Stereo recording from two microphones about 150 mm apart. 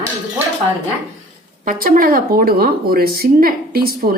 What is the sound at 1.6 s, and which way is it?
A woman's voice, 65° right (ahead or behind).